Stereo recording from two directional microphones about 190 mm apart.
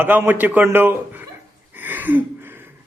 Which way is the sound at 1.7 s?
10° right (ahead or behind).